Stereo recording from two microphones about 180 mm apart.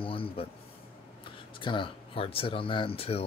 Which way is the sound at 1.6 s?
25° left (ahead or behind).